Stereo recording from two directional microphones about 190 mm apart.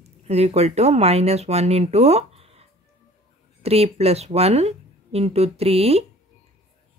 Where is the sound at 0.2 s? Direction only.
35° right (ahead or behind).